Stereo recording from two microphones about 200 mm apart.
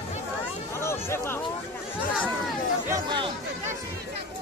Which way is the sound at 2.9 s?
15° right (ahead or behind).